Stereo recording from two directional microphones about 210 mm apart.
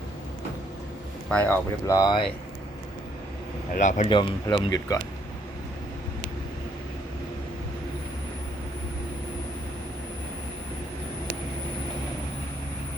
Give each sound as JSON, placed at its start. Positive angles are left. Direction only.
{"t": 1.3, "sound": "speech", "side_deg": 10}
{"t": 3.8, "sound": "a man's voice", "side_deg": 35}
{"t": 4.1, "sound": "speech", "side_deg": 20}